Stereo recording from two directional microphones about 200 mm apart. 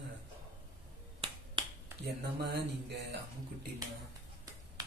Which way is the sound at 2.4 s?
55° right (ahead or behind).